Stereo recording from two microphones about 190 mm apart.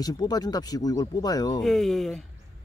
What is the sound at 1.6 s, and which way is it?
Speech, centre (ahead or behind).